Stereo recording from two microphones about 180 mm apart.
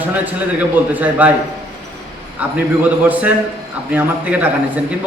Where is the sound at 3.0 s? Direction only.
10° right (ahead or behind).